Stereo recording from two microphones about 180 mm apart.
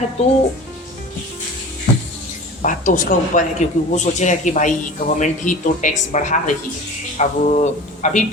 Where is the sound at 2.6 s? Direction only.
45° left (ahead or behind).